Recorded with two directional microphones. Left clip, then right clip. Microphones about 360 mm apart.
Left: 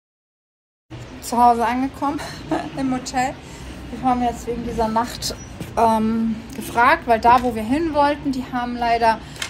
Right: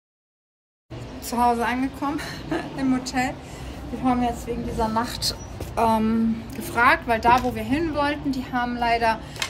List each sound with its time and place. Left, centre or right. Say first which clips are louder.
1.3 s a woman's voice: left 6 dB; centre